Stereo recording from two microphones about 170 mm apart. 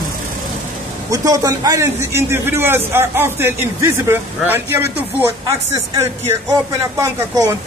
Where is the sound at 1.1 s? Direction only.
20° right (ahead or behind).